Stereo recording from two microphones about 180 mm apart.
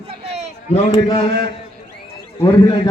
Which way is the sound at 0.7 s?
30° left (ahead or behind).